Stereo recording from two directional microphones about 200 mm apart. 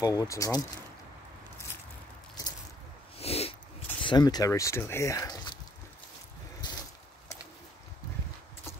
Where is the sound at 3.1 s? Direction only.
30° left (ahead or behind).